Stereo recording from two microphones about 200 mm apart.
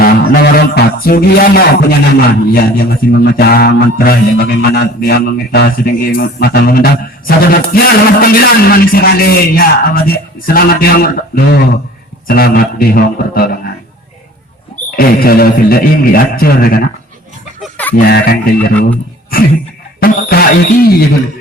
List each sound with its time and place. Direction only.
0.0 s a sound: 50° left (ahead or behind)
2.5 s a man's voice: 50° left (ahead or behind)
14.8 s a man's voice: 50° left (ahead or behind)
17.6 s chicken: 10° left (ahead or behind)
17.9 s a man's voice: 50° left (ahead or behind)
20.0 s music: 45° left (ahead or behind)